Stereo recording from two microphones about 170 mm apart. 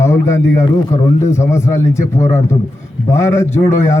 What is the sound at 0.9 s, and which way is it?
Speech, 45° left (ahead or behind).